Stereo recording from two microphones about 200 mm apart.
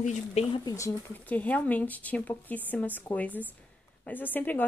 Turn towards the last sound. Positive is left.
turn(degrees=10)  # may be behind; listen again after turning